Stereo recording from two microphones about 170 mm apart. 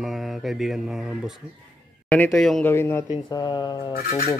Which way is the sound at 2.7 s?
15° left (ahead or behind).